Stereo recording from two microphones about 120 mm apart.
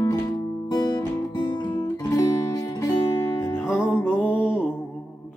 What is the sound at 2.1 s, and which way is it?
Music, 30° left (ahead or behind).